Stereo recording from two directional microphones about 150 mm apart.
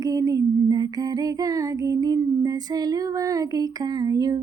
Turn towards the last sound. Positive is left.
turn(degrees=-25)  # may be behind; listen again after turning